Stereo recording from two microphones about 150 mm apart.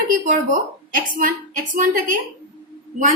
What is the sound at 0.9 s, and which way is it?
A woman's voice, 60° right (ahead or behind).